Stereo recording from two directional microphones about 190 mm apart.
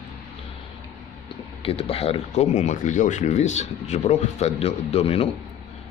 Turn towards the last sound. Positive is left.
turn(degrees=35)  # may be behind; listen again after turning